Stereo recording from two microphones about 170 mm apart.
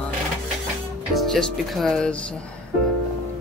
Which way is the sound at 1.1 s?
Centre (ahead or behind).